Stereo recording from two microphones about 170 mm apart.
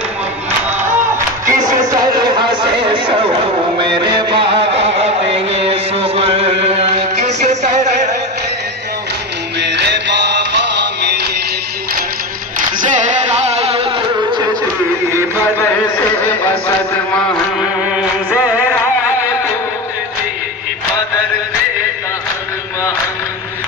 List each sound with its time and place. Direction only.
1.5 s music: 25° right (ahead or behind); by 8.1 s 40° right (ahead or behind)
9.6 s music: 90° right
13.5 s music: 35° right (ahead or behind)
16.4 s mantra: 10° left (ahead or behind)